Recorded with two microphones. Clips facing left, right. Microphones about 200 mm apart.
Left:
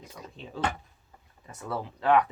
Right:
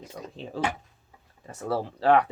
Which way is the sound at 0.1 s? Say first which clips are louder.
Right 6 dB; 45° right (ahead or behind).